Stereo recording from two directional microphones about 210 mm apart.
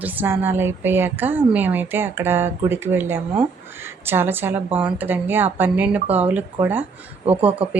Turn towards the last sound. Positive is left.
turn(degrees=-30)  # may be behind; listen again after turning